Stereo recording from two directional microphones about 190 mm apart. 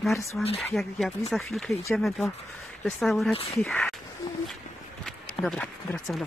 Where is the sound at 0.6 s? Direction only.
Centre (ahead or behind).